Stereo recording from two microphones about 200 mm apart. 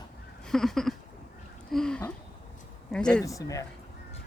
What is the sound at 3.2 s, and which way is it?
Speech, 15° left (ahead or behind).